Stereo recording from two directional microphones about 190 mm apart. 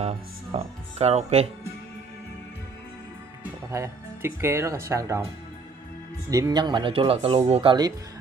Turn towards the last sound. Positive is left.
turn(degrees=-25)  # may be behind; listen again after turning